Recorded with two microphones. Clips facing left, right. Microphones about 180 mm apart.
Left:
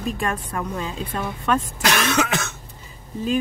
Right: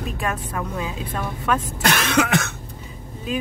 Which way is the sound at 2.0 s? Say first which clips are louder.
Right 2 dB; 55° right (ahead or behind).